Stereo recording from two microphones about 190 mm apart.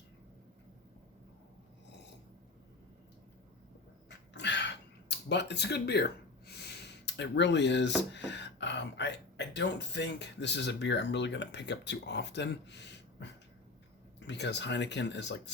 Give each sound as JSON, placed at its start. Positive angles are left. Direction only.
{"t": 4.1, "sound": "speech", "side_deg": 65}